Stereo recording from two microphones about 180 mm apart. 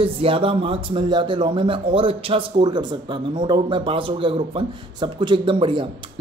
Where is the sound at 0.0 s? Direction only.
30° right (ahead or behind).